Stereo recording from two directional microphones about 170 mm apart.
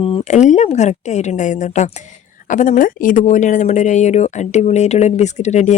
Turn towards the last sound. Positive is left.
turn(degrees=40)  # may be behind; listen again after turning